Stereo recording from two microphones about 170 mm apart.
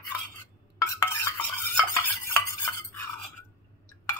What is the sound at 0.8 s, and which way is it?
Stir, 15° left (ahead or behind).